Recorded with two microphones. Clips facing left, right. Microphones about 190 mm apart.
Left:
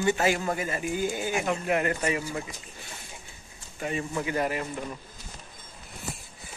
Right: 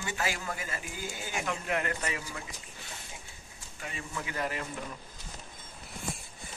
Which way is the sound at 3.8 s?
25° left (ahead or behind).